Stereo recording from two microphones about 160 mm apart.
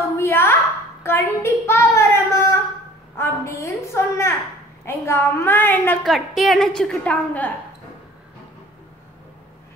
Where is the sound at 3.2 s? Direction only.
15° left (ahead or behind).